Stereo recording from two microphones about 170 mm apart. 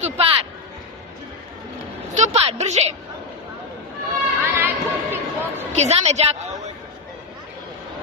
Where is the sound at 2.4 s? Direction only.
40° right (ahead or behind).